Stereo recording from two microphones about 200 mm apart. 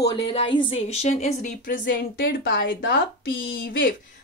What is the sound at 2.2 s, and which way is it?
Speech, 60° left (ahead or behind).